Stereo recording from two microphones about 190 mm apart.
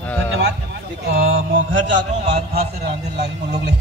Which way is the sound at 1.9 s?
60° right (ahead or behind).